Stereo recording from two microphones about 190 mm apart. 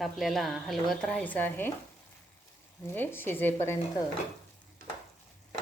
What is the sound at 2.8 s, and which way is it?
Speech, 10° left (ahead or behind).